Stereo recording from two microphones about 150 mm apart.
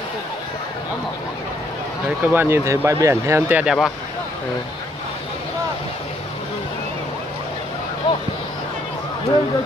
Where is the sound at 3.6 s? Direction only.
5° right (ahead or behind).